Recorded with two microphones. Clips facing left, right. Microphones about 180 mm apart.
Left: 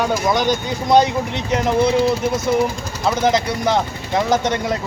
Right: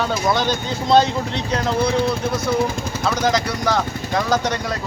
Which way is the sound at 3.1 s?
20° left (ahead or behind).